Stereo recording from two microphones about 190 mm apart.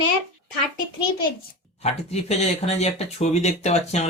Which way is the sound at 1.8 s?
35° left (ahead or behind).